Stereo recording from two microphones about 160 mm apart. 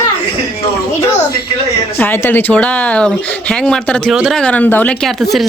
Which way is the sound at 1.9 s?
15° left (ahead or behind).